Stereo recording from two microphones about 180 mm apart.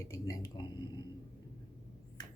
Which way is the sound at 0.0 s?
20° left (ahead or behind).